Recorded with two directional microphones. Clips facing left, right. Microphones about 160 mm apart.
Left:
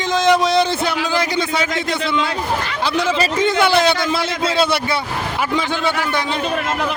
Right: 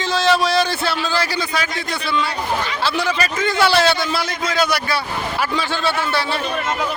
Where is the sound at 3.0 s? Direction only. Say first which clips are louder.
Left 6 dB; 25° left (ahead or behind).